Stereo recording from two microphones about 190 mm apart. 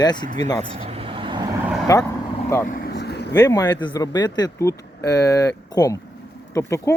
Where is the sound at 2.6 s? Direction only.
50° left (ahead or behind).